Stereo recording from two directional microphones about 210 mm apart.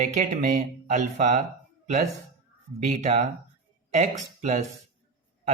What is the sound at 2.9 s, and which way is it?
Speech, 30° right (ahead or behind).